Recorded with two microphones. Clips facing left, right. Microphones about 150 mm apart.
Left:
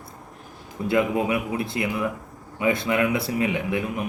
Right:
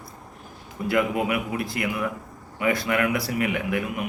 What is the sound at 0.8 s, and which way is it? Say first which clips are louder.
Speech: left 1 dB; 25° left (ahead or behind).